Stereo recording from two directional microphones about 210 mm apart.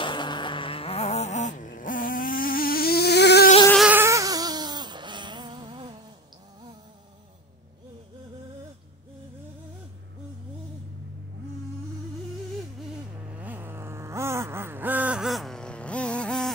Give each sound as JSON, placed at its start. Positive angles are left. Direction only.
{"t": 0.0, "sound": "vehicle", "side_deg": 20}
{"t": 3.7, "sound": "a sound", "side_deg": -5}
{"t": 13.4, "sound": "vehicle", "side_deg": -10}